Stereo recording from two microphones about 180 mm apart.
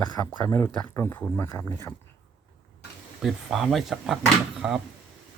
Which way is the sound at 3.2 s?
Centre (ahead or behind).